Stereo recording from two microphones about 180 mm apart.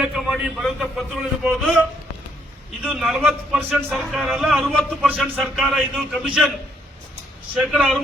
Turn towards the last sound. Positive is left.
turn(degrees=0)  # may be behind; listen again after turning